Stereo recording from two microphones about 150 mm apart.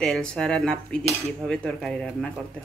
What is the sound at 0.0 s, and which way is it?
Speech, 5° left (ahead or behind).